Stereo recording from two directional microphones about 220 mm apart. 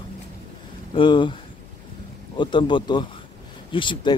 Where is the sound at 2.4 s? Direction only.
20° left (ahead or behind).